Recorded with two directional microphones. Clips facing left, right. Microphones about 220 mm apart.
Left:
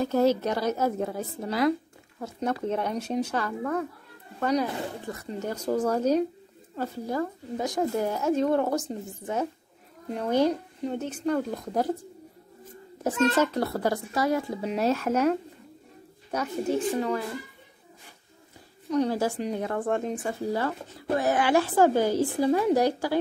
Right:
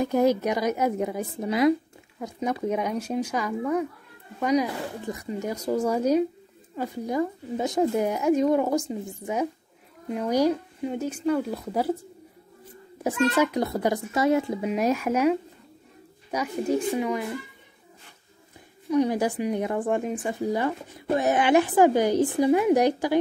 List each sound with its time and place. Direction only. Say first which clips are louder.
0.0 s speech: right 1 dB; 15° right (ahead or behind)
13.3 s speech: right 1 dB; 15° right (ahead or behind)
14.6 s speech: right 1 dB; 10° right (ahead or behind)
16.9 s speech: right 1 dB; 10° right (ahead or behind)
18.9 s speech: right 2 dB; 15° right (ahead or behind)